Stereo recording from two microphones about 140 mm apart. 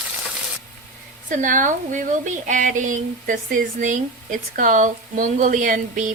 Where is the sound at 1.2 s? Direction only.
70° right (ahead or behind).